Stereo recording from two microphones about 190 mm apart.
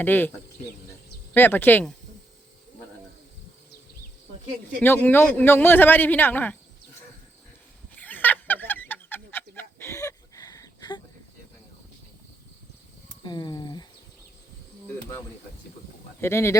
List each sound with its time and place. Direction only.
0.0 s a man's voice: 10° left (ahead or behind)
1.3 s a man's voice: 10° left (ahead or behind)
4.8 s a man's voice: 10° left (ahead or behind)
7.9 s a sound: 10° left (ahead or behind)
13.2 s speech: 20° left (ahead or behind)
16.2 s a man's voice: 15° left (ahead or behind)